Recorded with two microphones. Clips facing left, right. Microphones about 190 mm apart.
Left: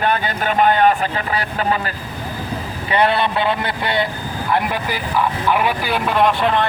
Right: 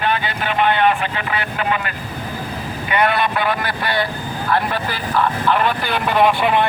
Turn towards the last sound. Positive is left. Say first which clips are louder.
# right 1 dB
turn(degrees=-10)  # may be behind; listen again after turning